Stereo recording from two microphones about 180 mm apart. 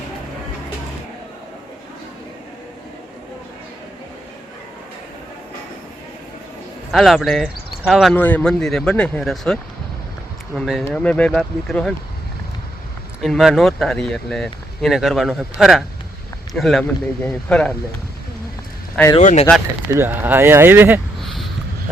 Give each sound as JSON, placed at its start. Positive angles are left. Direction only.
{"t": 6.9, "sound": "speech", "side_deg": 0}
{"t": 8.1, "sound": "speech", "side_deg": 10}
{"t": 13.2, "sound": "speech", "side_deg": 0}
{"t": 19.2, "sound": "speech", "side_deg": 45}
{"t": 19.9, "sound": "speech", "side_deg": -10}
{"t": 21.2, "sound": "a sound", "side_deg": 0}